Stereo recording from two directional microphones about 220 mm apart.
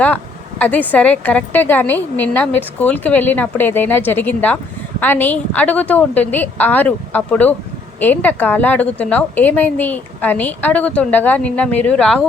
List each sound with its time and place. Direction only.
0.6 s a woman's voice: 5° left (ahead or behind)